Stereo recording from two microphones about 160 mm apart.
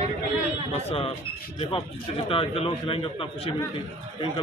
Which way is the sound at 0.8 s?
40° left (ahead or behind).